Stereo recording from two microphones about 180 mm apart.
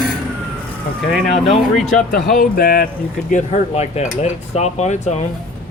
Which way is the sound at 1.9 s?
50° left (ahead or behind).